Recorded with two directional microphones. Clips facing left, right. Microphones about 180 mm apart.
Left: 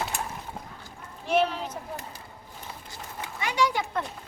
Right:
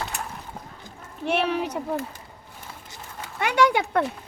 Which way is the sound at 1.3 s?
65° right (ahead or behind).